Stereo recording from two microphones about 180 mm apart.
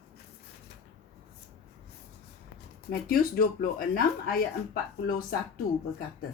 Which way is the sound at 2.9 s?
55° left (ahead or behind).